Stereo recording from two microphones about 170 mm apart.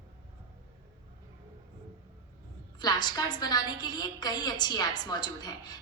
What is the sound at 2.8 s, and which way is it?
A woman's voice, 25° left (ahead or behind).